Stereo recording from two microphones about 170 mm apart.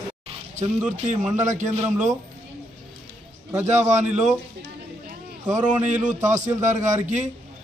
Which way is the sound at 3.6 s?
45° right (ahead or behind).